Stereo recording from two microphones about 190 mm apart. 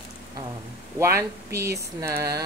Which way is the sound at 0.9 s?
15° right (ahead or behind).